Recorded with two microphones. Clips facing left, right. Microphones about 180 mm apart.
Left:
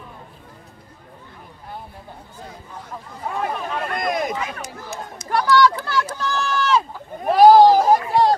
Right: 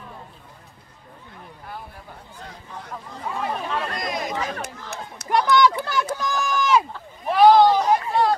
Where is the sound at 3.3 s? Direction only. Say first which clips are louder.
Left 2 dB; 50° left (ahead or behind).